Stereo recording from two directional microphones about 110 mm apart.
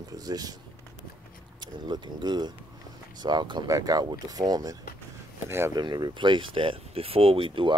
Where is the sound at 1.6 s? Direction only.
40° right (ahead or behind).